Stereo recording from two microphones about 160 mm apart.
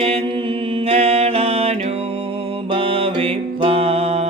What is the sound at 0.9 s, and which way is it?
Music, 35° right (ahead or behind).